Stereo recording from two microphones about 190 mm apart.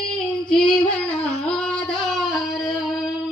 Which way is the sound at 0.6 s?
5° left (ahead or behind).